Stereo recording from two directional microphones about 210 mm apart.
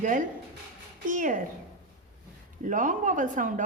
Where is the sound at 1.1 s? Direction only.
40° right (ahead or behind).